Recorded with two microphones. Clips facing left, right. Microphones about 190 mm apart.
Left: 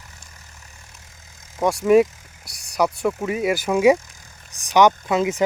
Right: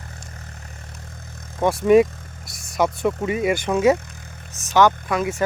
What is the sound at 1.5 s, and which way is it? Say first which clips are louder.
Speech: right 1 dB; centre (ahead or behind).